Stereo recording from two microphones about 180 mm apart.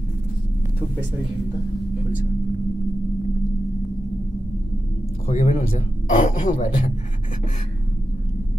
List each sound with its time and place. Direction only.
5.3 s a man's voice: 40° left (ahead or behind)